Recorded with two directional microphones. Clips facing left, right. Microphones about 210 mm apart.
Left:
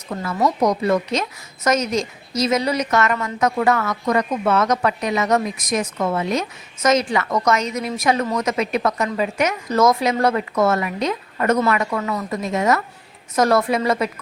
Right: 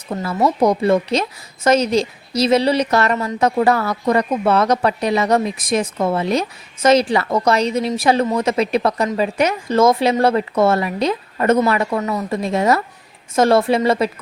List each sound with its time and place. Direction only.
0.3 s a woman's voice: 25° right (ahead or behind)